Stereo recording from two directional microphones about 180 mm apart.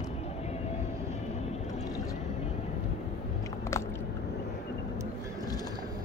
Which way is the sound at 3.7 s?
15° left (ahead or behind).